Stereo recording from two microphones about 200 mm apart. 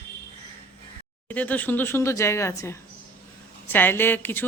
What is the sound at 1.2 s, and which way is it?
Speech, 10° left (ahead or behind).